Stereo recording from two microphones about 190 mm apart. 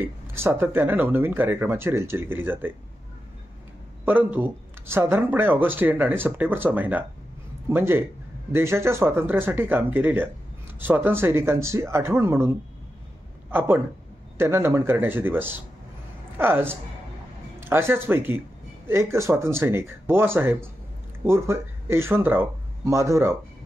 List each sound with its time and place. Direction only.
0.0 s speech: 10° right (ahead or behind)
4.0 s speech: 10° right (ahead or behind)